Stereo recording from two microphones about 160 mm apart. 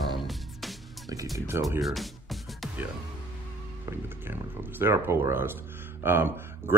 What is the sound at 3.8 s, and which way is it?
Speech, 15° right (ahead or behind).